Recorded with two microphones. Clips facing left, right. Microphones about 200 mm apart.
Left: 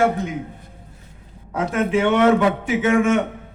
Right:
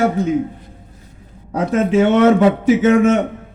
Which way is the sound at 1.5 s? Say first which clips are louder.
Right 4 dB; 40° right (ahead or behind).